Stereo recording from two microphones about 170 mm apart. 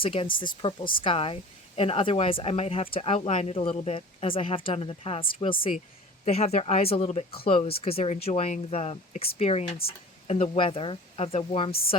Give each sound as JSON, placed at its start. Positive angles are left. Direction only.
{"t": 0.0, "sound": "speech", "side_deg": 35}